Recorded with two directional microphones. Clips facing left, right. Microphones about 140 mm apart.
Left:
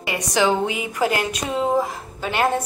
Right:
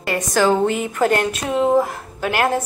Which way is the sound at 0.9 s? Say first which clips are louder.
Right 4 dB; 5° left (ahead or behind).